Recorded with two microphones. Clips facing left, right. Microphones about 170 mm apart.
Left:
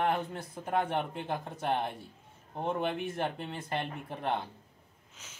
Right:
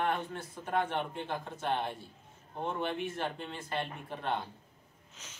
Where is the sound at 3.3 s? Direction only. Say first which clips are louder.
Left 2 dB; 15° left (ahead or behind).